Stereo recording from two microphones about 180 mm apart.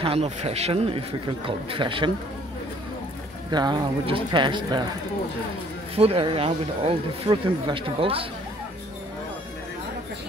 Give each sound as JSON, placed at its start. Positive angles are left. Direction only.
{"t": 0.0, "sound": "a man's voice", "side_deg": -35}
{"t": 3.5, "sound": "speech", "side_deg": -25}
{"t": 5.9, "sound": "a man's voice", "side_deg": -30}